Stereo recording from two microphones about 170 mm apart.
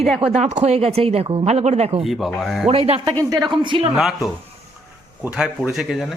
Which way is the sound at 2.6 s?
35° right (ahead or behind).